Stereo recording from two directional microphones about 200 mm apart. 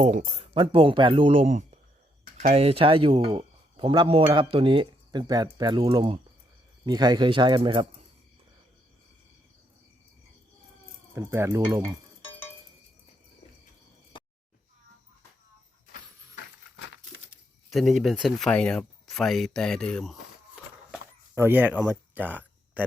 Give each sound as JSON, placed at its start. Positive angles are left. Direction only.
{"t": 0.0, "sound": "speech", "side_deg": -35}
{"t": 11.1, "sound": "speech", "side_deg": -15}
{"t": 14.1, "sound": "a sound", "side_deg": 25}
{"t": 15.9, "sound": "a sound", "side_deg": 60}
{"t": 17.7, "sound": "speech", "side_deg": 0}
{"t": 21.3, "sound": "speech", "side_deg": -10}